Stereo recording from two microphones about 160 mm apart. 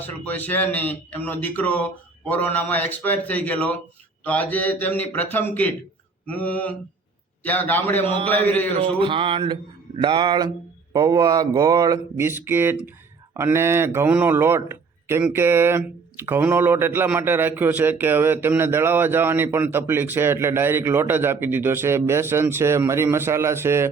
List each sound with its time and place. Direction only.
0.0 s speech: 10° left (ahead or behind)
8.8 s a sound: 35° right (ahead or behind)
10.0 s a man's voice: 30° right (ahead or behind)